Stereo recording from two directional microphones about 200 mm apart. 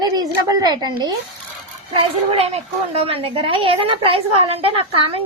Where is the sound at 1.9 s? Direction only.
30° right (ahead or behind).